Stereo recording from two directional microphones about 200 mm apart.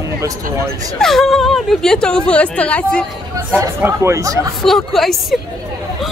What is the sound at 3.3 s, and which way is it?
Speech, 15° right (ahead or behind).